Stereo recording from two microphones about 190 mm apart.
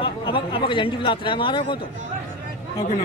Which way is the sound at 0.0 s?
25° left (ahead or behind).